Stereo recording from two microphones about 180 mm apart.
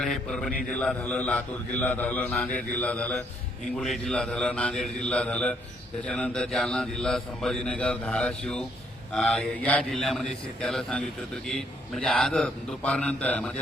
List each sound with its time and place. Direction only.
0.0 s a man's voice: 5° left (ahead or behind)